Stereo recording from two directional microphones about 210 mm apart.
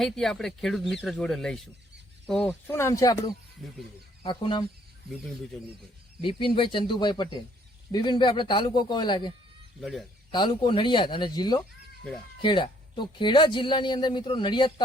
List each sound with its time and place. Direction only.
0.0 s speech: centre (ahead or behind); by 3.3 s 15° left (ahead or behind)
3.6 s speech: centre (ahead or behind)
4.2 s speech: 25° left (ahead or behind)
6.2 s speech: 25° left (ahead or behind)
9.8 s speech: centre (ahead or behind)
10.3 s speech: 20° left (ahead or behind)